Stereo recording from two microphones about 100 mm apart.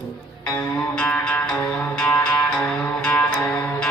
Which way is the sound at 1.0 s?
10° left (ahead or behind).